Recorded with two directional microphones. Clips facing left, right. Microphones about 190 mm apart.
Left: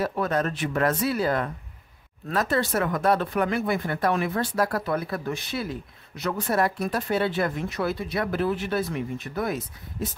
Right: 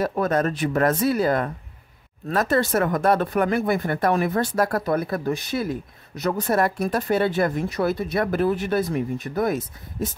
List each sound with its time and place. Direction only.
0.0 s speech: 45° right (ahead or behind)